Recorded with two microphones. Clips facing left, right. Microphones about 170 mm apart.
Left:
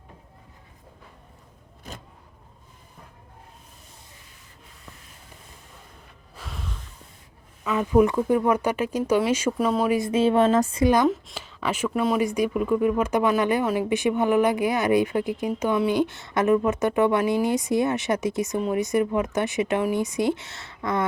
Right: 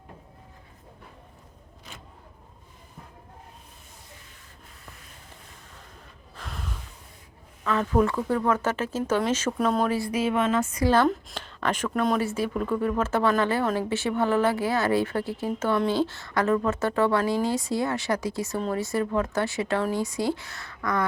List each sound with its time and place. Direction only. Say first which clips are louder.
6.3 s snort: even; centre (ahead or behind)
7.6 s speech: left 4 dB; 10° left (ahead or behind)
9.9 s speech: left 5 dB; 25° left (ahead or behind)
10.8 s speech: left 1 dB; 15° left (ahead or behind)
11.1 s speech: left 2 dB; 5° left (ahead or behind); by 21.0 s 25° left (ahead or behind)